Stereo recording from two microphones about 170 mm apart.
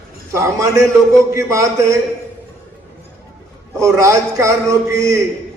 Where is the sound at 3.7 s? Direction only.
15° right (ahead or behind).